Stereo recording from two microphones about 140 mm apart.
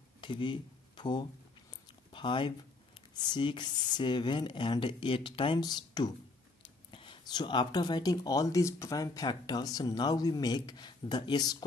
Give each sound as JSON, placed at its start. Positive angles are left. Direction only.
{"t": 0.2, "sound": "speech", "side_deg": 35}